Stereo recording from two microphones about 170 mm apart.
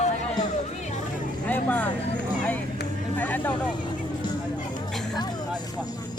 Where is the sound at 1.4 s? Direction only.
10° left (ahead or behind).